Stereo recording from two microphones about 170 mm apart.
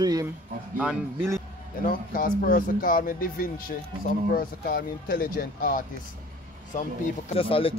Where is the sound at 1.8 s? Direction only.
60° left (ahead or behind).